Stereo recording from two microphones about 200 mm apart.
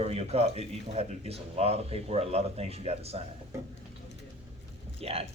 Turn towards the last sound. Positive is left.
turn(degrees=-30)  # may be behind; listen again after turning